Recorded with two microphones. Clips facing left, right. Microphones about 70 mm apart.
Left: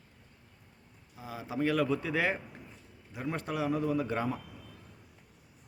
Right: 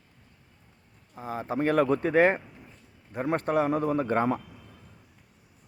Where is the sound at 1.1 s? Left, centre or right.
Right.